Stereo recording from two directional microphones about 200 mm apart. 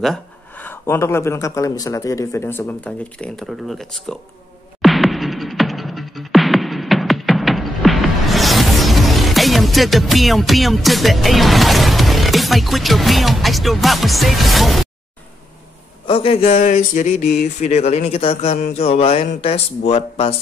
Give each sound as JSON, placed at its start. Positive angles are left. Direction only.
{"t": 0.0, "sound": "speech", "side_deg": 5}
{"t": 4.8, "sound": "music", "side_deg": 0}
{"t": 16.1, "sound": "speech", "side_deg": 30}